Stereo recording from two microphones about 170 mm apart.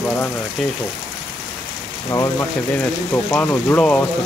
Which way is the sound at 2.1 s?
20° left (ahead or behind).